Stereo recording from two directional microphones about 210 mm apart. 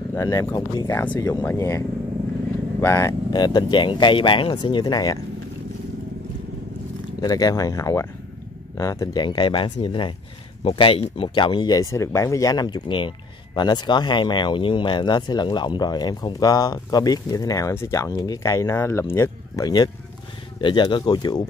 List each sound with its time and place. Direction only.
0.1 s speech: 15° left (ahead or behind)
2.8 s speech: 15° left (ahead or behind)
7.2 s speech: 20° left (ahead or behind)